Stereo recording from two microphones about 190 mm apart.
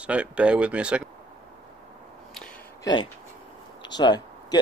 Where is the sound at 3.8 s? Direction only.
25° left (ahead or behind).